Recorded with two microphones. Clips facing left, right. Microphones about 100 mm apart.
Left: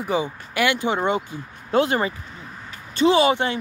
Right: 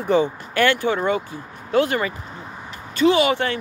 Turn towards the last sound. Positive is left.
turn(degrees=20)  # may be behind; listen again after turning